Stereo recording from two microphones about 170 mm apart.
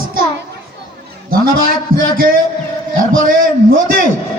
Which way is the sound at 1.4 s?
60° right (ahead or behind).